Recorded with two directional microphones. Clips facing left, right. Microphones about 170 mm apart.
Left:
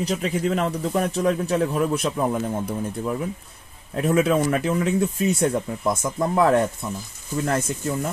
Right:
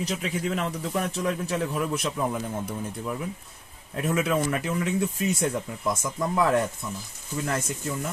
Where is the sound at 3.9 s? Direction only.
40° left (ahead or behind).